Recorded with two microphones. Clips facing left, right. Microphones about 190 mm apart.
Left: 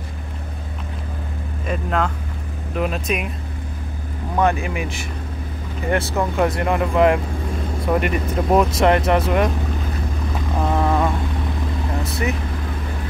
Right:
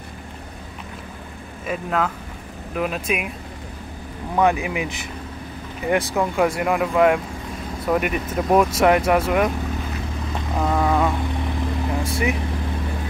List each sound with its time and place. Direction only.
1.7 s speech: 5° right (ahead or behind)
4.4 s speech: 15° right (ahead or behind)
6.1 s speech: 5° right (ahead or behind)
10.6 s vehicle: centre (ahead or behind)
12.0 s vehicle: 10° right (ahead or behind)